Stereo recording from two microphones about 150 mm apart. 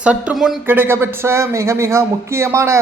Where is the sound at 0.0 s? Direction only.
10° right (ahead or behind).